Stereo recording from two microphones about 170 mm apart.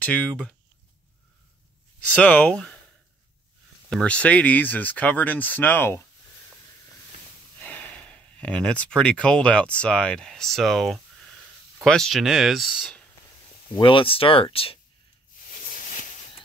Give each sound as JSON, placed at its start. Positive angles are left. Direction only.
{"t": 0.0, "sound": "speech", "side_deg": 10}
{"t": 2.0, "sound": "speech", "side_deg": 10}
{"t": 3.9, "sound": "speech", "side_deg": 5}
{"t": 7.5, "sound": "speech", "side_deg": 10}
{"t": 13.7, "sound": "speech", "side_deg": 30}